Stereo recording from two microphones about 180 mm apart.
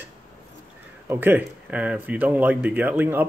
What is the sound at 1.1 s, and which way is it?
Speech, 10° right (ahead or behind).